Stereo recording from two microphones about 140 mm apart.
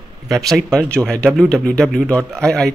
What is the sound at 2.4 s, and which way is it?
Speech, 5° left (ahead or behind).